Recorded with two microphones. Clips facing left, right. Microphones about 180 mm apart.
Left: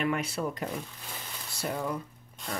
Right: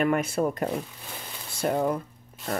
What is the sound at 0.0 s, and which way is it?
Speech, 50° right (ahead or behind).